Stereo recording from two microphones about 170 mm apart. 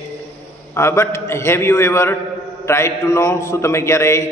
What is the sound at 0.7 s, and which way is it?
A man's voice, 15° left (ahead or behind).